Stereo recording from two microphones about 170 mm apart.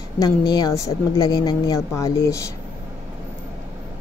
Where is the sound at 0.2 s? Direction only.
25° left (ahead or behind).